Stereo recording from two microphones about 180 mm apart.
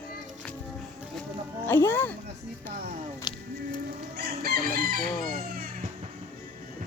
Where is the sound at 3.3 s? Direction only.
25° left (ahead or behind).